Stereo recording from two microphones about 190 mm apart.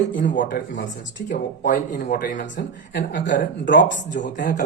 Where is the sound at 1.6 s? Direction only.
45° left (ahead or behind); by 4.2 s 70° left (ahead or behind).